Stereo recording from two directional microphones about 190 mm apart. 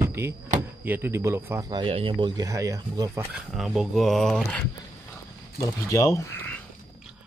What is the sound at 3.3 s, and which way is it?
Speech, centre (ahead or behind).